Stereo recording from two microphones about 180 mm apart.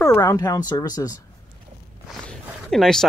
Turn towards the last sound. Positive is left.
turn(degrees=0)  # may be behind; listen again after turning